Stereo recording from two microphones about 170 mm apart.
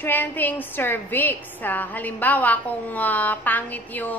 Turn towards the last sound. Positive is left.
turn(degrees=10)  # may be behind; listen again after turning